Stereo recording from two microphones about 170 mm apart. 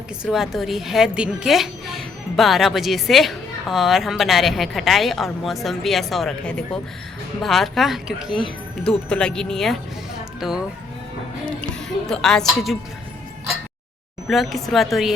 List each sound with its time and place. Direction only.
0.2 s a woman's voice: centre (ahead or behind)
14.3 s a woman's voice: centre (ahead or behind)